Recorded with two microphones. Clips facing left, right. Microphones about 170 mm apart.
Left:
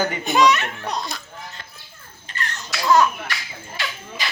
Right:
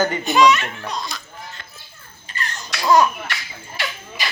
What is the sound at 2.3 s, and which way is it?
Babbling, 10° right (ahead or behind).